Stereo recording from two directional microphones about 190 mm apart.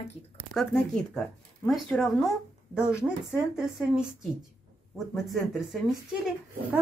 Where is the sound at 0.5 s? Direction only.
5° left (ahead or behind).